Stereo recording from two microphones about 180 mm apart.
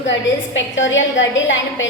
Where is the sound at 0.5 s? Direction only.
90° left.